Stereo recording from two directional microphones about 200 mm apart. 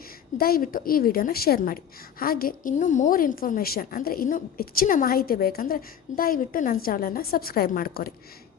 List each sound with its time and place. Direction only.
0.3 s a woman's voice: 50° left (ahead or behind)